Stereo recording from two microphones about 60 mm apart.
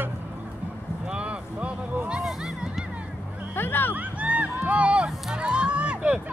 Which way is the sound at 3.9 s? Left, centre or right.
Right.